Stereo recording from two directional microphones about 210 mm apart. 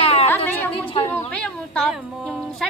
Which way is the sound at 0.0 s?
30° left (ahead or behind).